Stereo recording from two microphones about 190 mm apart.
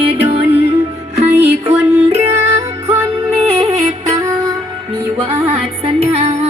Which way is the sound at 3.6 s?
30° right (ahead or behind).